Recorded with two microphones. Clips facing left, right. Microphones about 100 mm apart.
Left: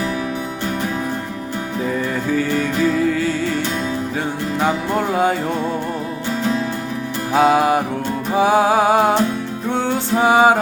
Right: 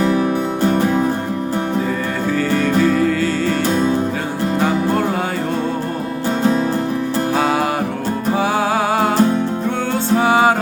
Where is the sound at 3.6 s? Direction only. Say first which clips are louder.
Right 6 dB; 35° right (ahead or behind).